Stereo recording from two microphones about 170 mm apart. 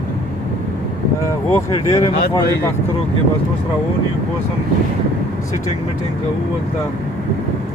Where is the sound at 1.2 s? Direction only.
20° left (ahead or behind).